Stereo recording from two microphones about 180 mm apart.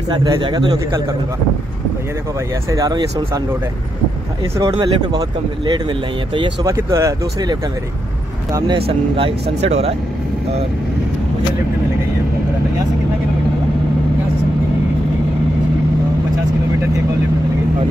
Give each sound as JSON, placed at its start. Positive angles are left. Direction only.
{"t": 0.1, "sound": "speech", "side_deg": -25}
{"t": 2.7, "sound": "speech", "side_deg": -20}
{"t": 4.6, "sound": "speech", "side_deg": -20}
{"t": 6.3, "sound": "speech", "side_deg": -20}
{"t": 8.5, "sound": "speech", "side_deg": -25}